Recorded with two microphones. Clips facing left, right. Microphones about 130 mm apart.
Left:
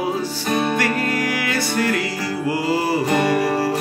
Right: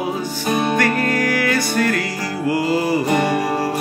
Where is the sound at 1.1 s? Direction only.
25° left (ahead or behind).